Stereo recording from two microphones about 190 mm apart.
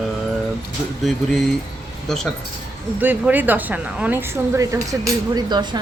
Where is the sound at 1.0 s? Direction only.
Centre (ahead or behind).